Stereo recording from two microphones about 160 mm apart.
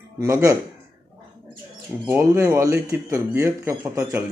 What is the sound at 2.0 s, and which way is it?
Speech, 15° right (ahead or behind).